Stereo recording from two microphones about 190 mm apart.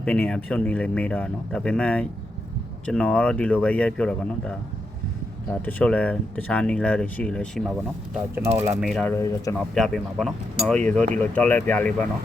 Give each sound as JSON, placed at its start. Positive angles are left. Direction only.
{"t": 0.0, "sound": "speech", "side_deg": 5}
{"t": 5.6, "sound": "speech", "side_deg": 5}
{"t": 8.4, "sound": "speech", "side_deg": -15}
{"t": 8.8, "sound": "speech", "side_deg": 0}
{"t": 9.1, "sound": "speech", "side_deg": 15}
{"t": 9.6, "sound": "speech", "side_deg": 0}